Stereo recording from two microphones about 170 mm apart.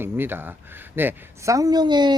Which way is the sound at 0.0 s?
10° right (ahead or behind).